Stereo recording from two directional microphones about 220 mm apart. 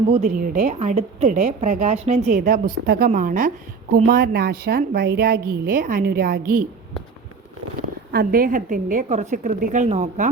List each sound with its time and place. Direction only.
0.1 s a woman's voice: 35° right (ahead or behind)
8.1 s a woman's voice: 45° right (ahead or behind)